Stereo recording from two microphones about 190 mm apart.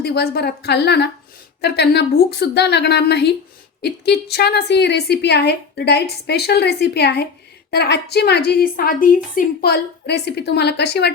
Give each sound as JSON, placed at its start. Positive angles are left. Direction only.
{"t": 0.0, "sound": "a woman's voice", "side_deg": 55}